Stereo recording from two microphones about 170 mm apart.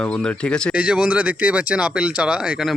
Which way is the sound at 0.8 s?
5° right (ahead or behind).